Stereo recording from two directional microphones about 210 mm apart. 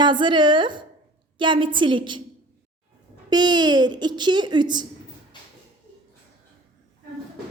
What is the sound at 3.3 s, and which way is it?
A woman's voice, 20° right (ahead or behind).